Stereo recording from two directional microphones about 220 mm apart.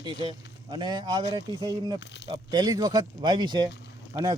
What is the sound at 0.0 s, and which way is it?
Speech, 20° right (ahead or behind).